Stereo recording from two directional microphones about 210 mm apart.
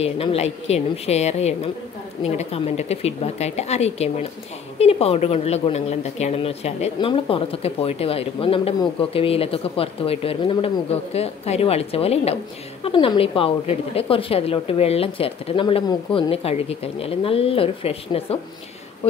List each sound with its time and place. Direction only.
0.0 s a woman's voice: 30° left (ahead or behind)